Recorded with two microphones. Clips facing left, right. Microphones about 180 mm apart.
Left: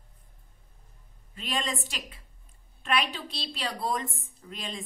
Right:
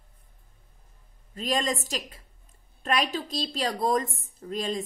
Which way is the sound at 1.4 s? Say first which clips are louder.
Right 5 dB; 40° right (ahead or behind).